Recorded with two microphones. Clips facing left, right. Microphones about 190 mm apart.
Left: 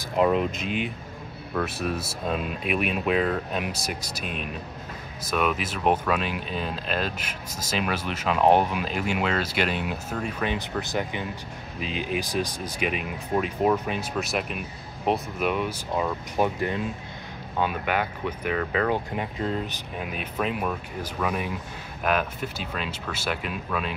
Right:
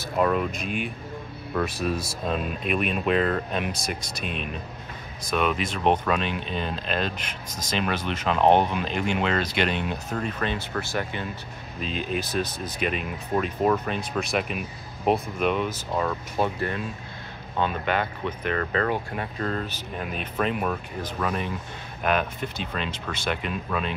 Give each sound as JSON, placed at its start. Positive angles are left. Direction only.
{"t": 0.0, "sound": "speech", "side_deg": 15}
{"t": 1.5, "sound": "speech", "side_deg": 0}
{"t": 5.2, "sound": "speech", "side_deg": 5}